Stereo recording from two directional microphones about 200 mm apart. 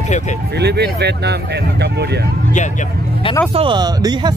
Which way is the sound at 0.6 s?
55° right (ahead or behind).